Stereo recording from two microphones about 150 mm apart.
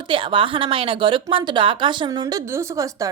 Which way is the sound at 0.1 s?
35° right (ahead or behind).